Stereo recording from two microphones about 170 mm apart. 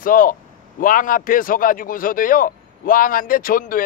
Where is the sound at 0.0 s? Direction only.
55° left (ahead or behind).